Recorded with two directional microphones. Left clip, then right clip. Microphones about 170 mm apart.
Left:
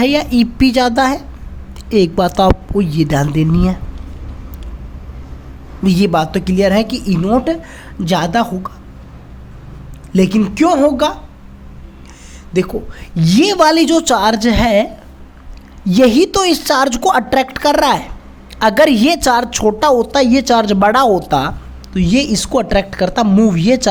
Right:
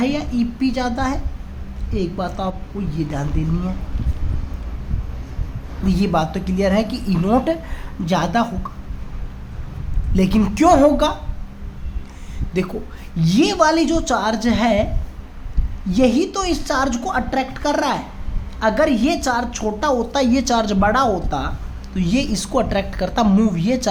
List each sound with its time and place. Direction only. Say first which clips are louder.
0.0 s a woman's voice: left 8 dB; 50° left (ahead or behind)
5.8 s a woman's voice: left 6 dB; 40° left (ahead or behind)
7.3 s a sound: left 3 dB; 20° left (ahead or behind)
8.0 s a woman's voice: left 4 dB; 40° left (ahead or behind)
10.1 s a woman's voice: left 6 dB; 30° left (ahead or behind)
10.5 s a sound: even; 20° left (ahead or behind)
12.5 s a woman's voice: left 7 dB; 30° left (ahead or behind)
15.9 s a woman's voice: left 7 dB; 45° left (ahead or behind)
20.1 s a woman's voice: left 6 dB; 35° left (ahead or behind)
21.9 s a woman's voice: left 7 dB; 30° left (ahead or behind)
23.2 s speech: left 4 dB; 15° left (ahead or behind)
23.5 s a woman's voice: left 7 dB; 35° left (ahead or behind)